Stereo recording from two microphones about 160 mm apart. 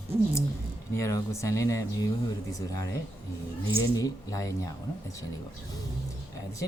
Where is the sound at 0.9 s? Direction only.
15° left (ahead or behind).